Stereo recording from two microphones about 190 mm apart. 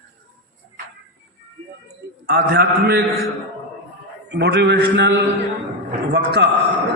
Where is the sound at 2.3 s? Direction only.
55° right (ahead or behind).